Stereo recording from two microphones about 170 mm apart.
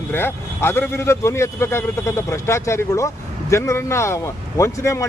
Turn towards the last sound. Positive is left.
turn(degrees=15)  # may be behind; listen again after turning